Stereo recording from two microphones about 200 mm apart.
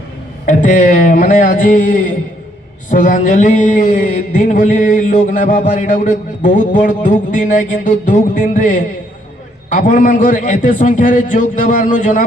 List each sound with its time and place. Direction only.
0.4 s a man's voice: 40° left (ahead or behind)